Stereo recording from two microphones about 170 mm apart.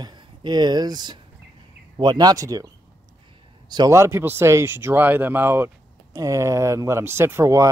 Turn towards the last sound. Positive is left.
turn(degrees=-15)  # may be behind; listen again after turning